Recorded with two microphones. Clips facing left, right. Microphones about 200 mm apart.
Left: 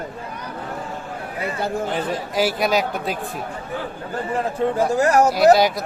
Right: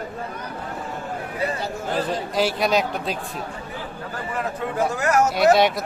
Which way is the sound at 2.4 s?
5° left (ahead or behind).